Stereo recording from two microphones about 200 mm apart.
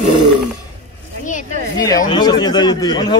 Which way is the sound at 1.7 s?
20° left (ahead or behind).